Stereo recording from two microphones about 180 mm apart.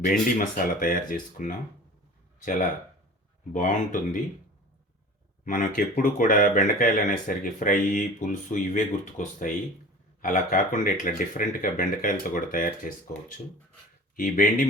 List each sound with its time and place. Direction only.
0.0 s speech: 50° left (ahead or behind)
5.5 s speech: 50° left (ahead or behind)
14.2 s speech: 50° left (ahead or behind)